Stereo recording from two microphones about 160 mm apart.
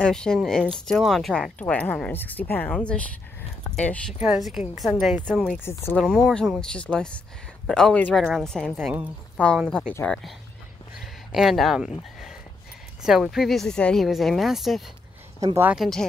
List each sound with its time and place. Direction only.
0.0 s speech: 5° left (ahead or behind)
4.2 s speech: 5° right (ahead or behind)
5.6 s speech: 15° left (ahead or behind)
5.9 s speech: 5° left (ahead or behind)
10.0 s speech: 5° left (ahead or behind)
11.3 s speech: centre (ahead or behind)
13.0 s speech: centre (ahead or behind)
15.4 s speech: 15° right (ahead or behind)
15.7 s speech: centre (ahead or behind)